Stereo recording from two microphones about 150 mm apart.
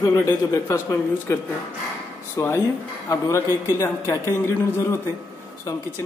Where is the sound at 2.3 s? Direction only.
15° left (ahead or behind).